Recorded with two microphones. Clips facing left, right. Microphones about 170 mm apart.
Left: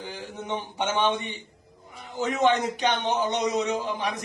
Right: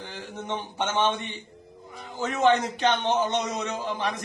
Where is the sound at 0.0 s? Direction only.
15° left (ahead or behind).